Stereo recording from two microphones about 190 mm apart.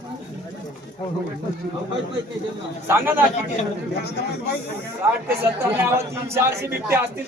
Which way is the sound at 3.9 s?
60° left (ahead or behind).